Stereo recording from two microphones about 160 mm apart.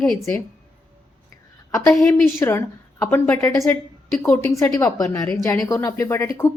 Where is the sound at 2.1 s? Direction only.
15° left (ahead or behind).